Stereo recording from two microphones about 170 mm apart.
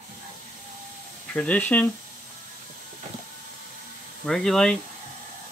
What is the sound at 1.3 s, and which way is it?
Speech, 10° left (ahead or behind).